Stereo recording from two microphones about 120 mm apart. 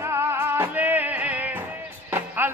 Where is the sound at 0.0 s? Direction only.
20° right (ahead or behind).